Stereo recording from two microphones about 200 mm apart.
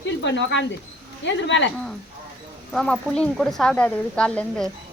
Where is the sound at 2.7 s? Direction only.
Centre (ahead or behind).